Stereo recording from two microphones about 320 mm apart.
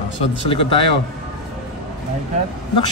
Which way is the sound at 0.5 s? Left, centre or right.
Centre.